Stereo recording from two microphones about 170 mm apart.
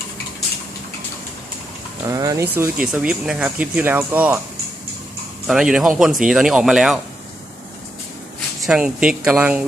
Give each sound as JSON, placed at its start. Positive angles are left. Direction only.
{"t": 2.0, "sound": "speech", "side_deg": -20}
{"t": 2.6, "sound": "speech", "side_deg": -10}
{"t": 5.5, "sound": "speech", "side_deg": -5}
{"t": 8.6, "sound": "speech", "side_deg": -5}